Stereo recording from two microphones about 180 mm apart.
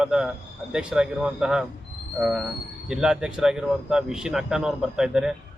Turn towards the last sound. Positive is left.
turn(degrees=-5)  # may be behind; listen again after turning